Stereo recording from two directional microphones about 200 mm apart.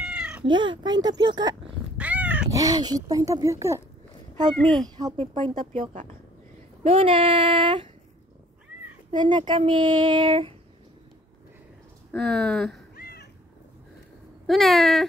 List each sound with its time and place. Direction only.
0.0 s cat: 5° right (ahead or behind)
0.5 s speech: 25° right (ahead or behind)
2.0 s cat: 10° right (ahead or behind)
2.6 s speech: 20° right (ahead or behind)
4.6 s speech: 5° left (ahead or behind)
4.9 s speech: 25° right (ahead or behind)
6.8 s speech: 30° right (ahead or behind)
9.1 s speech: 20° right (ahead or behind)
12.1 s speech: centre (ahead or behind)
12.9 s cat: 50° left (ahead or behind)
14.4 s speech: centre (ahead or behind)